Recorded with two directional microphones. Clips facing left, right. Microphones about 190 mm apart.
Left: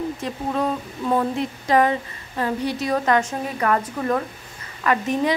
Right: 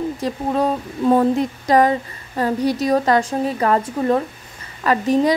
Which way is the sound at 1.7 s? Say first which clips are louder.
Right 3 dB; 40° right (ahead or behind).